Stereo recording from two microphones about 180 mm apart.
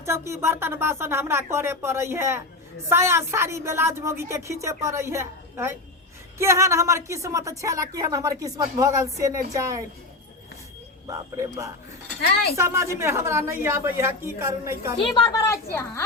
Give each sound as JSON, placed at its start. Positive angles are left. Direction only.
{"t": 0.0, "sound": "a woman's voice", "side_deg": -15}
{"t": 11.3, "sound": "a woman's voice", "side_deg": -15}
{"t": 14.9, "sound": "a woman's voice", "side_deg": 30}
{"t": 15.4, "sound": "a woman's voice", "side_deg": 15}